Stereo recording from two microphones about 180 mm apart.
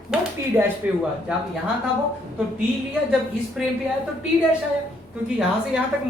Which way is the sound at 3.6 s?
5° right (ahead or behind).